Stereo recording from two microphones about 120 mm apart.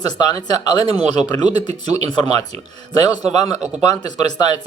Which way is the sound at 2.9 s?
35° left (ahead or behind).